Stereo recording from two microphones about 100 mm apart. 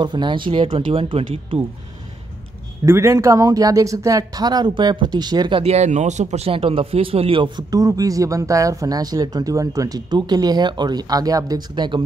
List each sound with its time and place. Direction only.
0.0 s speech: 50° right (ahead or behind); by 1.6 s 65° right (ahead or behind)
2.8 s speech: 30° right (ahead or behind); by 5.6 s 45° right (ahead or behind)
5.6 s speech: 90° right
6.3 s speech: 80° right; by 7.6 s 55° right (ahead or behind)
7.7 s speech: 35° right (ahead or behind)